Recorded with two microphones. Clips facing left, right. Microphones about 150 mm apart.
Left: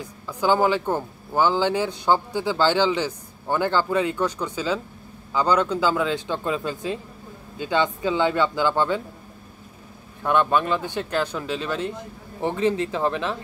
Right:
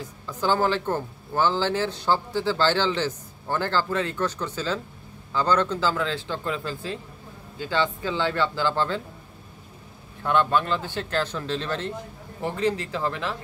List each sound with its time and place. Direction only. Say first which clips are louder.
0.3 s a man's voice: left 3 dB; 10° left (ahead or behind)
10.2 s a man's voice: left 2 dB; 15° left (ahead or behind)